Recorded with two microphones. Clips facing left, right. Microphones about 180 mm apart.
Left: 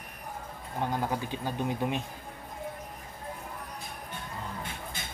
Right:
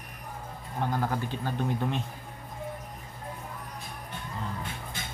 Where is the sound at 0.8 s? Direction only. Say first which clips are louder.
Right 1 dB; 15° left (ahead or behind).